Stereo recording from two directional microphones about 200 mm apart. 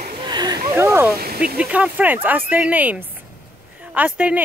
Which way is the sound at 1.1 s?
50° right (ahead or behind).